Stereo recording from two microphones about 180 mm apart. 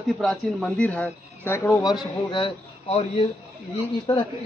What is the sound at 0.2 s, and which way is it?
A man's voice, 5° left (ahead or behind).